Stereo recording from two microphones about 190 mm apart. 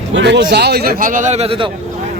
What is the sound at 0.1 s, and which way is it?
Speech, 70° right (ahead or behind).